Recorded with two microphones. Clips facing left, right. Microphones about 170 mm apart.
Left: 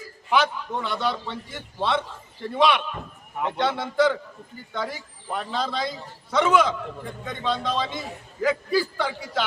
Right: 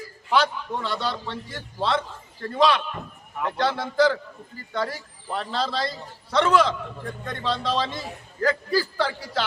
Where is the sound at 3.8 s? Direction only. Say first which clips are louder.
Right 1 dB; centre (ahead or behind).